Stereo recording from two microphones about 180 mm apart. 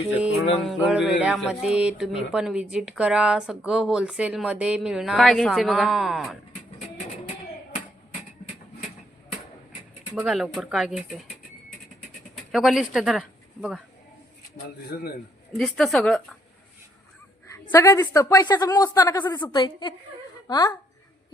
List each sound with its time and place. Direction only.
0.6 s speech: centre (ahead or behind)
10.2 s speech: centre (ahead or behind)
12.5 s speech: centre (ahead or behind)
14.9 s a man's voice: 60° left (ahead or behind)
15.5 s speech: centre (ahead or behind)
17.5 s a woman's voice: 15° left (ahead or behind)